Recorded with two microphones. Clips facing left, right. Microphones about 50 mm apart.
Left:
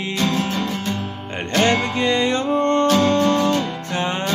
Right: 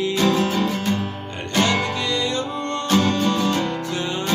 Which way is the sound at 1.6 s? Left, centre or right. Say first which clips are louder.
Left 2 dB; left.